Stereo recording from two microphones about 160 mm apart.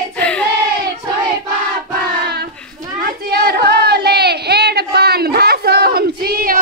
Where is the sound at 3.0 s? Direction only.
80° right.